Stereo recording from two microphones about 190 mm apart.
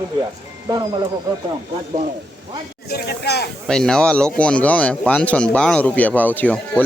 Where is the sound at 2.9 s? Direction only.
55° left (ahead or behind).